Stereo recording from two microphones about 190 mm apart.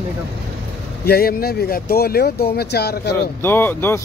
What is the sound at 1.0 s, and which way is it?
Speech, 55° left (ahead or behind).